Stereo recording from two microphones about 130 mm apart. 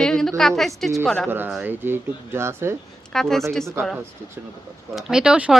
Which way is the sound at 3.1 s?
5° left (ahead or behind).